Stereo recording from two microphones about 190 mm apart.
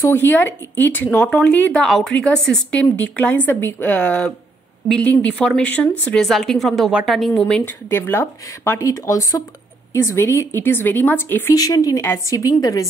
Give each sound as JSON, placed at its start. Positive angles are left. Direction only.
{"t": 0.0, "sound": "speech", "side_deg": 10}